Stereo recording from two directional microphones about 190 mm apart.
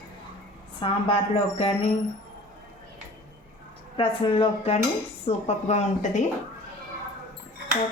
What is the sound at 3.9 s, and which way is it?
A woman's voice, 25° left (ahead or behind).